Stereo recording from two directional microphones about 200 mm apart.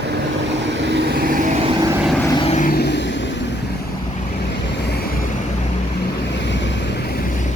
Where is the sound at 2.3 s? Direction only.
25° left (ahead or behind).